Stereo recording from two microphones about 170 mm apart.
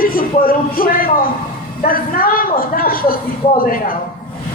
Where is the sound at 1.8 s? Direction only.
55° left (ahead or behind).